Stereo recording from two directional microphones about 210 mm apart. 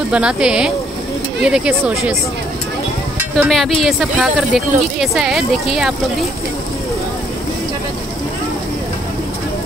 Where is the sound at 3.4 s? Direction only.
Centre (ahead or behind).